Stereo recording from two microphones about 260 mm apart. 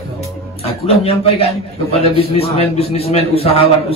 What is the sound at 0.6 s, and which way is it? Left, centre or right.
A man's voice, left.